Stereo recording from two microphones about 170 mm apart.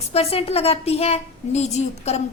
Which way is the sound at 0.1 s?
35° left (ahead or behind).